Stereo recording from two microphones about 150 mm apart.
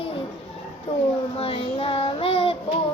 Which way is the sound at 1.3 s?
40° left (ahead or behind).